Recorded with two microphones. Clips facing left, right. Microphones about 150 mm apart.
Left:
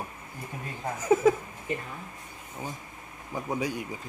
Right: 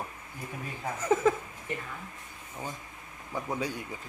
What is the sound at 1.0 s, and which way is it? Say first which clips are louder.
Speech: left 3 dB; 10° left (ahead or behind).